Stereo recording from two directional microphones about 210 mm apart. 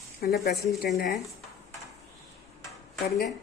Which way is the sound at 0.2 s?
40° left (ahead or behind).